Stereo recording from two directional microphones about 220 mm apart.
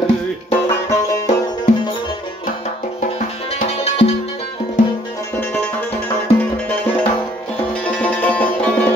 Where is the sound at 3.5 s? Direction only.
25° left (ahead or behind).